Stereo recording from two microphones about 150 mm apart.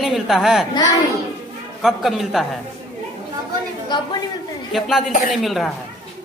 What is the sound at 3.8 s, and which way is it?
Speech, 30° left (ahead or behind).